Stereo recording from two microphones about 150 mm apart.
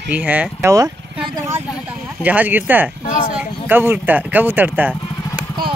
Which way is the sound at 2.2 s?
10° right (ahead or behind).